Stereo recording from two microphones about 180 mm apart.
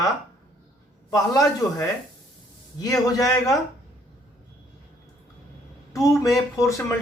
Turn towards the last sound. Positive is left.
turn(degrees=15)  # may be behind; listen again after turning